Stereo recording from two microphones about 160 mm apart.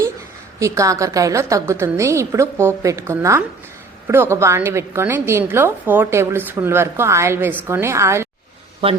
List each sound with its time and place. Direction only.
0.6 s a woman's voice: 20° right (ahead or behind)